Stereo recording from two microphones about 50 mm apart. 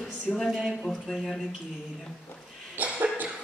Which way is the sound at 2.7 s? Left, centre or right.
Right.